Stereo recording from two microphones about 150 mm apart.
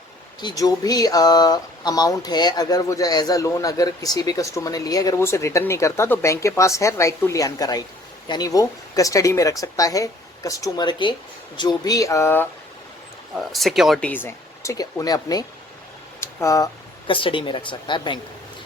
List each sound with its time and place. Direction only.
0.4 s speech: 25° left (ahead or behind)
13.3 s speech: centre (ahead or behind)
14.1 s speech: 15° left (ahead or behind)
17.1 s speech: 35° left (ahead or behind)